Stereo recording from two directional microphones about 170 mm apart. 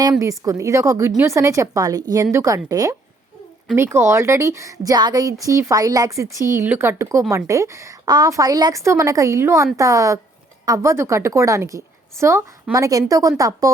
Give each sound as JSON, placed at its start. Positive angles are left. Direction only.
{"t": 0.0, "sound": "a woman's voice", "side_deg": -20}